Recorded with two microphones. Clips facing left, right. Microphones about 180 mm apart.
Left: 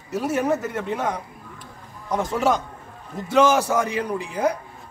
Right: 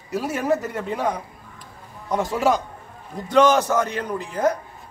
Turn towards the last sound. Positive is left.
turn(degrees=10)  # may be behind; listen again after turning